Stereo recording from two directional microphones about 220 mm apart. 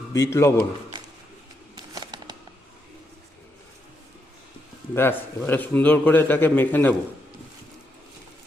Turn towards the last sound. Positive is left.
turn(degrees=10)  # may be behind; listen again after turning